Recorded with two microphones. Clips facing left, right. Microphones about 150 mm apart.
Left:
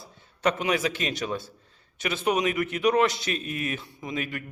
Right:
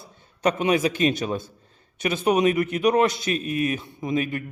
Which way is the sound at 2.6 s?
45° right (ahead or behind).